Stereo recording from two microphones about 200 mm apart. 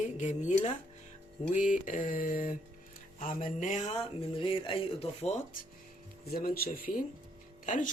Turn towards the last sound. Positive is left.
turn(degrees=40)  # may be behind; listen again after turning